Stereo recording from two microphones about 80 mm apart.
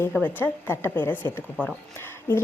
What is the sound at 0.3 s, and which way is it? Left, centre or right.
A woman's voice, left.